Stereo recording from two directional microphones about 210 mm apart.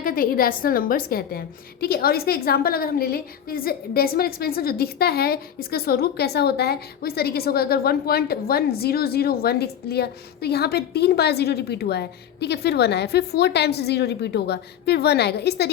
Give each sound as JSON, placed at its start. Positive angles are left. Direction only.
{"t": 0.0, "sound": "a woman's voice", "side_deg": 45}